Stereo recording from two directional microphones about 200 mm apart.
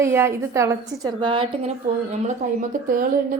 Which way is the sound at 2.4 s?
40° right (ahead or behind).